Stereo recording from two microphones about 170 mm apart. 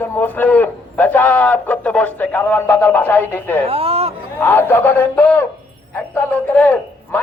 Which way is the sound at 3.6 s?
35° right (ahead or behind).